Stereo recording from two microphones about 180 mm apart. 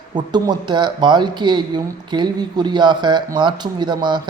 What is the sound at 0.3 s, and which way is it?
Speech, 25° right (ahead or behind).